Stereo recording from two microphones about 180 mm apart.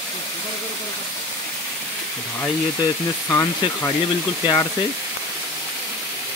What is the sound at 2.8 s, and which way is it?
Speech, 15° left (ahead or behind).